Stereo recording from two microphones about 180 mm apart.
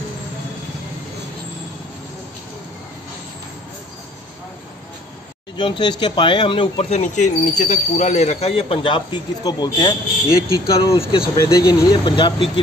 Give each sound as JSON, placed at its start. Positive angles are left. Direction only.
{"t": 5.6, "sound": "speech", "side_deg": 25}
{"t": 11.0, "sound": "speech", "side_deg": 30}
{"t": 11.3, "sound": "speech", "side_deg": 20}